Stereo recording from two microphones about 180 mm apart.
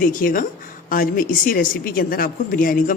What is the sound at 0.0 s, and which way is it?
Speech, 50° left (ahead or behind).